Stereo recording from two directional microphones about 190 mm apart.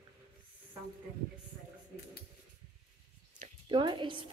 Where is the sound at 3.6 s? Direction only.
25° right (ahead or behind).